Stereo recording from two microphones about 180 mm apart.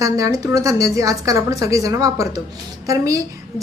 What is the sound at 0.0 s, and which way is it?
A woman's voice, 20° right (ahead or behind).